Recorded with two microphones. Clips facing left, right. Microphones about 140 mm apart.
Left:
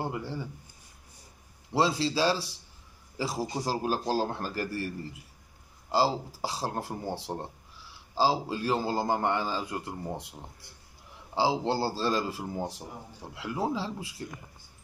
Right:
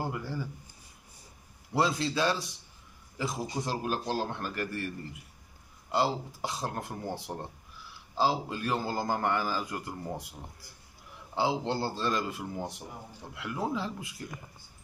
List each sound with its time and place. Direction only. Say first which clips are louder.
0.0 s speech: left 1 dB; 25° left (ahead or behind)
1.7 s a man's voice: left 2 dB; 30° left (ahead or behind)